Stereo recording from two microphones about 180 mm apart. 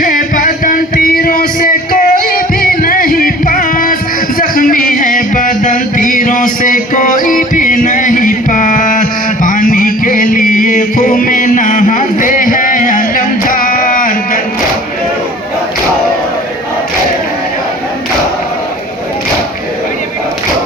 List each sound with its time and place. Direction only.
0.0 s music: 50° left (ahead or behind)